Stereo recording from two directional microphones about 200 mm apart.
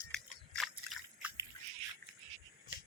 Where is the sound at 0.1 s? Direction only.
Centre (ahead or behind).